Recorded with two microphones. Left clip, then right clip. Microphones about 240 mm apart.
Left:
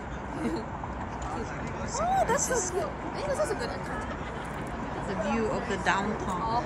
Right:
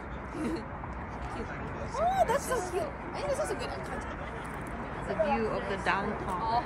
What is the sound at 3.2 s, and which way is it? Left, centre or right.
Speech, right.